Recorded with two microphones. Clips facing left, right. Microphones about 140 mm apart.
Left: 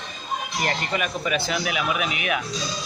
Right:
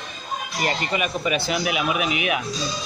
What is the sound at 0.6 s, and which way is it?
Speech, 10° right (ahead or behind).